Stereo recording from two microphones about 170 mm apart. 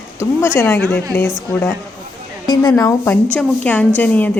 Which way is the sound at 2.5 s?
20° left (ahead or behind).